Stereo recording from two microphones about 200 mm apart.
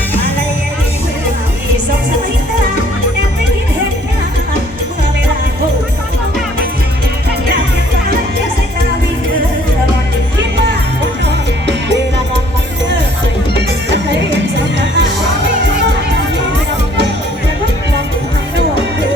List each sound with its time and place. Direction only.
13.6 s music: 60° right (ahead or behind)